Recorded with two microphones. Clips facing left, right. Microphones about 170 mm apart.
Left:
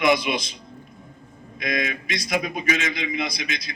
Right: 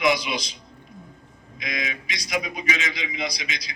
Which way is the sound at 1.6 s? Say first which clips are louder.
Left 5 dB; 55° left (ahead or behind).